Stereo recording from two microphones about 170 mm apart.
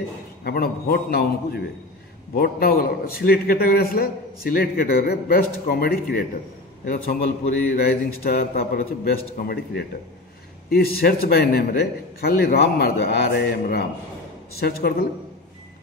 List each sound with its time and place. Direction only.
0.4 s a man's voice: 65° left (ahead or behind)